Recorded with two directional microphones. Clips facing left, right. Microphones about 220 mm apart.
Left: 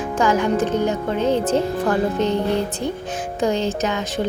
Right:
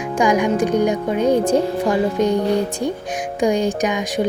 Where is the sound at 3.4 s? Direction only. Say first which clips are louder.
Right 3 dB; 15° right (ahead or behind).